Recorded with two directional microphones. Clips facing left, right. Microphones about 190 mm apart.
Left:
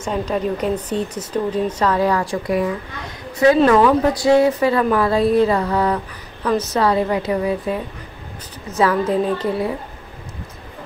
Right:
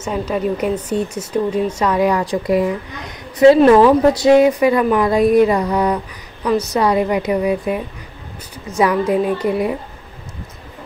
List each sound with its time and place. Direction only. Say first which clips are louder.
0.0 s speech: right 1 dB; 5° right (ahead or behind)